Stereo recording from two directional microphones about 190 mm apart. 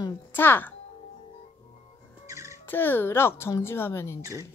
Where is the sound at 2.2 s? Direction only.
15° right (ahead or behind).